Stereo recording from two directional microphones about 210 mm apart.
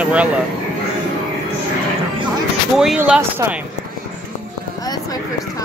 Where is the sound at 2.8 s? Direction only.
5° right (ahead or behind).